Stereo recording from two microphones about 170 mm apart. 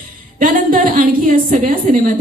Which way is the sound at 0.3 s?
55° right (ahead or behind).